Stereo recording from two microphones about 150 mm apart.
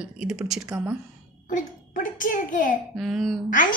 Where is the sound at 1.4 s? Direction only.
65° left (ahead or behind).